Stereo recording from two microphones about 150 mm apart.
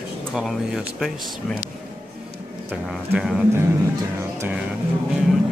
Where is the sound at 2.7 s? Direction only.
5° right (ahead or behind).